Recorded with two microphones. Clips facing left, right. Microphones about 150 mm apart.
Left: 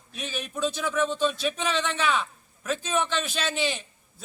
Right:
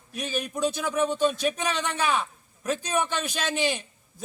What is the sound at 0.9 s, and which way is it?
A man's voice, 15° right (ahead or behind).